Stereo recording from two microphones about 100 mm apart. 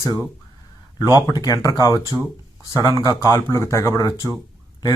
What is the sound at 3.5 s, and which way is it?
Speech, 30° left (ahead or behind).